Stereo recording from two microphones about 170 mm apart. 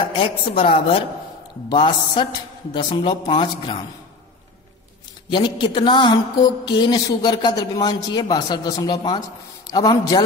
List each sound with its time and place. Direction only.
0.2 s a woman's voice: 35° left (ahead or behind)
5.3 s a man's voice: 25° left (ahead or behind)